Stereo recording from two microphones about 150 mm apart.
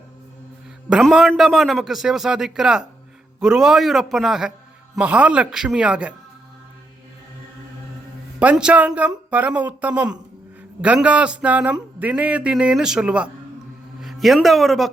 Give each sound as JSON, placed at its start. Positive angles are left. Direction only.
{"t": 1.0, "sound": "a man's voice", "side_deg": 0}
{"t": 8.4, "sound": "speech", "side_deg": -5}